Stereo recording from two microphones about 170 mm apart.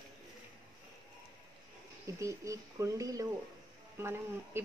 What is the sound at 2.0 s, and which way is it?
Speech, 20° right (ahead or behind).